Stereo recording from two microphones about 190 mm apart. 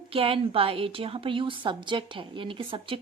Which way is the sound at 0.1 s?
30° right (ahead or behind).